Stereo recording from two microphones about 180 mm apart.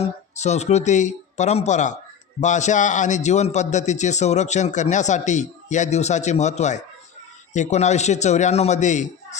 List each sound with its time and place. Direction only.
0.0 s a man's voice: 40° left (ahead or behind)